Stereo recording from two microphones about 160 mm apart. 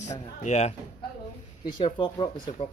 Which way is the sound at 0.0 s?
45° left (ahead or behind).